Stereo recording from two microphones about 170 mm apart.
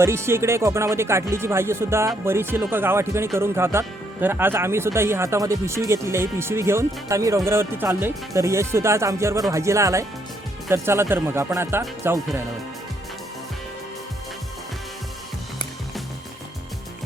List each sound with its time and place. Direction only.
0.0 s speech: 15° right (ahead or behind)